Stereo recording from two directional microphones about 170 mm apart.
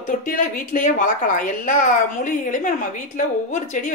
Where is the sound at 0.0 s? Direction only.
50° left (ahead or behind).